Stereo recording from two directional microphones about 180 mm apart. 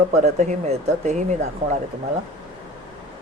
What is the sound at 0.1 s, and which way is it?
Speech, 40° right (ahead or behind).